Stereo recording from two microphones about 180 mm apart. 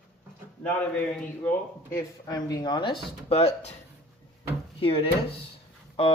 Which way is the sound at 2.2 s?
20° left (ahead or behind).